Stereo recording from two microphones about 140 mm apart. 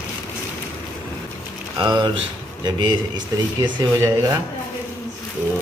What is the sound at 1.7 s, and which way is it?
Speech, 35° right (ahead or behind).